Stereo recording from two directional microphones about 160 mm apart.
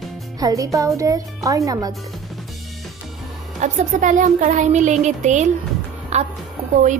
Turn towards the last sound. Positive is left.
turn(degrees=-50)  # may be behind; listen again after turning